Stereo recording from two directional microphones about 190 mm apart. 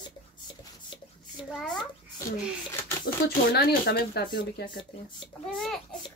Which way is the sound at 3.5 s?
55° left (ahead or behind).